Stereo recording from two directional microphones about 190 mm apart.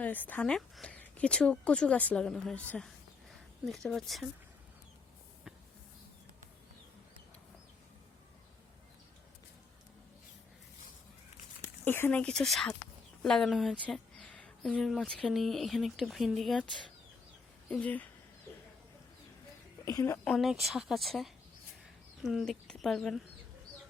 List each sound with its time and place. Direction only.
0.0 s speech: 10° left (ahead or behind)
11.9 s speech: 10° left (ahead or behind)
19.8 s a woman's voice: 15° left (ahead or behind)
20.2 s speech: centre (ahead or behind)